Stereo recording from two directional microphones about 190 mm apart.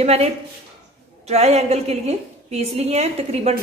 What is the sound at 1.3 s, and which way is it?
A woman's voice, 35° right (ahead or behind).